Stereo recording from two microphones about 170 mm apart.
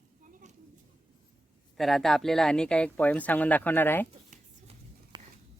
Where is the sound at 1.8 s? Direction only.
Centre (ahead or behind).